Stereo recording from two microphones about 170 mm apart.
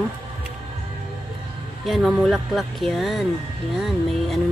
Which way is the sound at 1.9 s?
Centre (ahead or behind).